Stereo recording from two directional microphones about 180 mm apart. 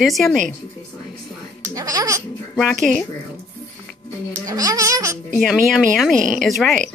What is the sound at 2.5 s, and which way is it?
Speech, 5° left (ahead or behind).